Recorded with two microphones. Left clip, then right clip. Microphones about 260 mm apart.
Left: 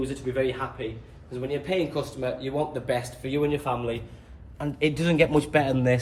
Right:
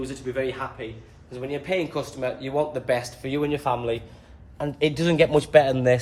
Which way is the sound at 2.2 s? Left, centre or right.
Centre.